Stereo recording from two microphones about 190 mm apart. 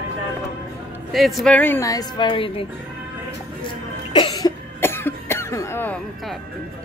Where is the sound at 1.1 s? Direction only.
Centre (ahead or behind); by 2.7 s 30° left (ahead or behind).